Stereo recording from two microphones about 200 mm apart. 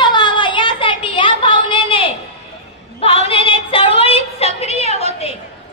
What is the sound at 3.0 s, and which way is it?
Female singing, 30° left (ahead or behind).